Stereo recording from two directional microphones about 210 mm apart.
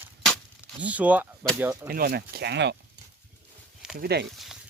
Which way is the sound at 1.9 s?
45° right (ahead or behind).